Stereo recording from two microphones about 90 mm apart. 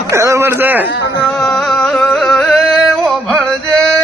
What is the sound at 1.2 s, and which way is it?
Music, 10° left (ahead or behind).